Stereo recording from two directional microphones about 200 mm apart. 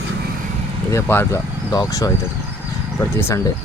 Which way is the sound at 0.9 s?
10° left (ahead or behind).